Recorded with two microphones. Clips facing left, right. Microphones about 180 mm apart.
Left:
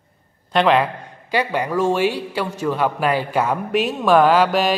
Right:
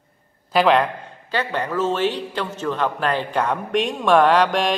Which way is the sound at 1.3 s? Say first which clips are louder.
Left 3 dB; 10° left (ahead or behind).